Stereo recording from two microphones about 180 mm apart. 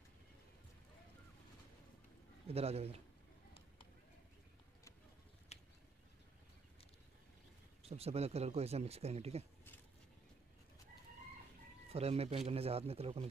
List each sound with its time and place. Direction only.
2.4 s speech: 35° right (ahead or behind)
5.5 s a sound: 35° left (ahead or behind)
7.8 s speech: 35° right (ahead or behind)
11.9 s speech: 35° right (ahead or behind)